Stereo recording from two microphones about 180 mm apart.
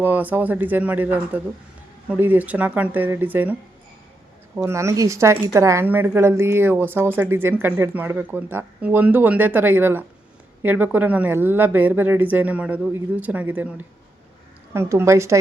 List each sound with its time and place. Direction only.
0.0 s a woman's voice: 10° right (ahead or behind)
4.5 s a woman's voice: 15° right (ahead or behind)